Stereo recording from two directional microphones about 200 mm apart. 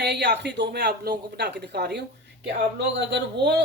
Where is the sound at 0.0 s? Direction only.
55° right (ahead or behind).